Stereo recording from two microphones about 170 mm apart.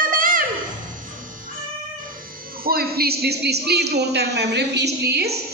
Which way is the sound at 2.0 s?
60° right (ahead or behind).